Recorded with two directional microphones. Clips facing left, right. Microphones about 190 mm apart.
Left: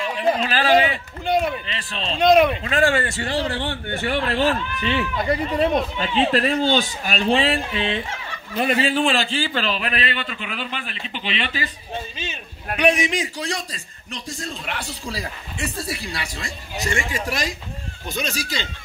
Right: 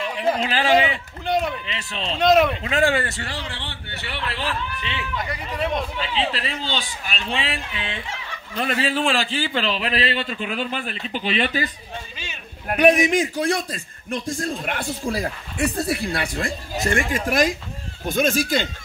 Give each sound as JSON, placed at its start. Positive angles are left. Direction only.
{"t": 0.4, "sound": "a man's voice", "side_deg": -20}
{"t": 1.2, "sound": "speech", "side_deg": 0}
{"t": 1.7, "sound": "a man's voice", "side_deg": -20}
{"t": 2.1, "sound": "speech", "side_deg": 0}
{"t": 2.6, "sound": "a man's voice", "side_deg": -15}
{"t": 2.9, "sound": "speech", "side_deg": 0}
{"t": 3.2, "sound": "a man's voice", "side_deg": 25}
{"t": 3.4, "sound": "speech", "side_deg": 45}
{"t": 8.9, "sound": "a man's voice", "side_deg": -5}